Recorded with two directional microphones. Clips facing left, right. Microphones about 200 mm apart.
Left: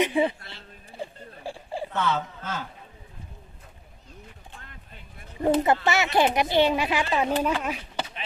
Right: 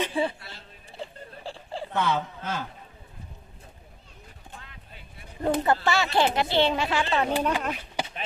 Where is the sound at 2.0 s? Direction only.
15° right (ahead or behind).